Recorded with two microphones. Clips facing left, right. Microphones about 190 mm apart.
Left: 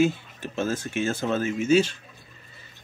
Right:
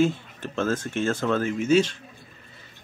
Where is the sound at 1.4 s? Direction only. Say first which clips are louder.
Left 1 dB; 5° left (ahead or behind).